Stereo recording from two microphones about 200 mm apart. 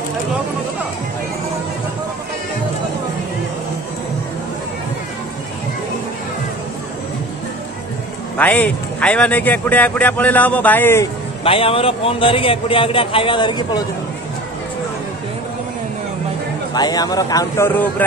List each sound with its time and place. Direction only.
8.4 s speech: 10° left (ahead or behind)
11.4 s a man's voice: 30° left (ahead or behind)
16.7 s speech: 20° left (ahead or behind)